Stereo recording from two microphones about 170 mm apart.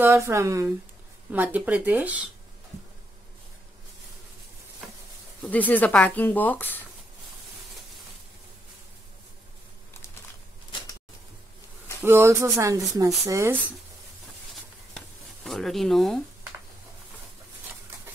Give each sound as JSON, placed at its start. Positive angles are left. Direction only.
{"t": 0.0, "sound": "speech", "side_deg": -15}
{"t": 5.7, "sound": "speech", "side_deg": 10}
{"t": 12.0, "sound": "speech", "side_deg": -15}
{"t": 14.5, "sound": "a sound", "side_deg": 0}